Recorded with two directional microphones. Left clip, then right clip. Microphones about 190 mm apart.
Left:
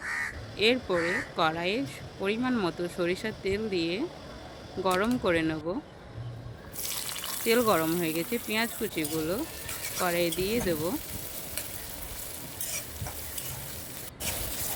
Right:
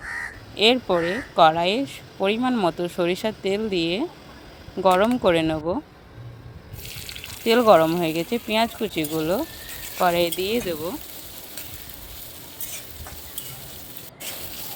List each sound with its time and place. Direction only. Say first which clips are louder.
0.5 s speech: right 7 dB; 35° right (ahead or behind)
7.4 s speech: right 9 dB; 30° right (ahead or behind)